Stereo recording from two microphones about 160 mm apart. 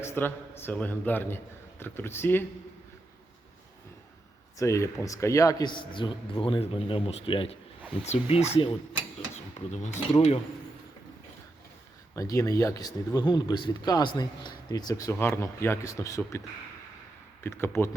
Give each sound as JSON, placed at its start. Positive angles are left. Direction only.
{"t": 0.0, "sound": "speech", "side_deg": 15}
{"t": 4.5, "sound": "speech", "side_deg": 20}
{"t": 12.1, "sound": "speech", "side_deg": 20}
{"t": 17.4, "sound": "speech", "side_deg": 15}